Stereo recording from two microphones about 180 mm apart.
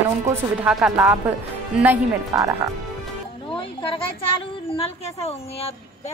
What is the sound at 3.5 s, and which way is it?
A woman's voice, 30° left (ahead or behind).